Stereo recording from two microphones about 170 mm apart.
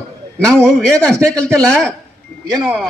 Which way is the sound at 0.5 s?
5° left (ahead or behind).